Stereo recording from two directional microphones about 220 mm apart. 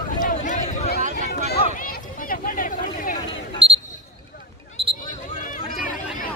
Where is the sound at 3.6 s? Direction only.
25° right (ahead or behind).